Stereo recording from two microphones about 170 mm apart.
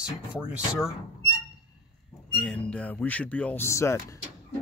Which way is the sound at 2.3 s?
5° left (ahead or behind).